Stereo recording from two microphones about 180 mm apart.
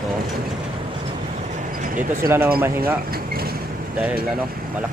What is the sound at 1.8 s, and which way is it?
Speech, 45° right (ahead or behind).